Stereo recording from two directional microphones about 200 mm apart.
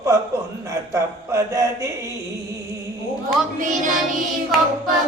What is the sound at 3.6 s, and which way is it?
Child singing, 40° right (ahead or behind).